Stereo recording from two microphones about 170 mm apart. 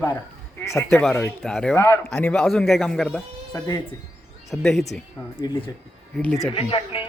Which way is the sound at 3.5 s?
15° left (ahead or behind).